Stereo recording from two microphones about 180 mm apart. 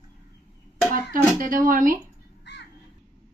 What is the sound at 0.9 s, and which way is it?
Speech, 50° right (ahead or behind).